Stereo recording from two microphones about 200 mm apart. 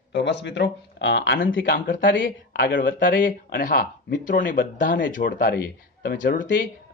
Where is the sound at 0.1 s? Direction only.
60° left (ahead or behind).